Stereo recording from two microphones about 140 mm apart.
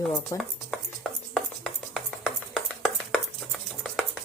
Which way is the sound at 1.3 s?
Centre (ahead or behind).